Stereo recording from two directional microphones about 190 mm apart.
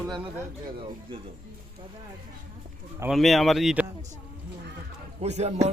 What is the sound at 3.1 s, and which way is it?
Speech, centre (ahead or behind).